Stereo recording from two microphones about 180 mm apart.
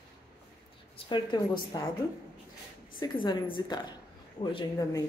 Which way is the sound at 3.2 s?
25° left (ahead or behind).